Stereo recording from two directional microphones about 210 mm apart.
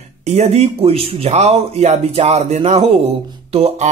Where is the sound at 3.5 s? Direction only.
30° right (ahead or behind).